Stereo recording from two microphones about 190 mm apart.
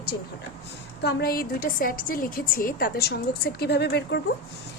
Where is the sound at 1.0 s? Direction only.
60° left (ahead or behind).